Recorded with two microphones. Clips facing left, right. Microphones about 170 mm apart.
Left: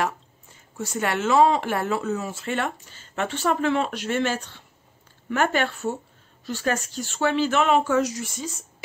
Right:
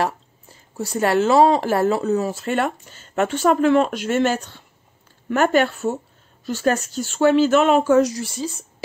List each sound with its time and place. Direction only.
0.0 s speech: 35° right (ahead or behind)